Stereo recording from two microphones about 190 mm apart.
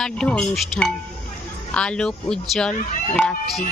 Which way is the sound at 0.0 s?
5° left (ahead or behind).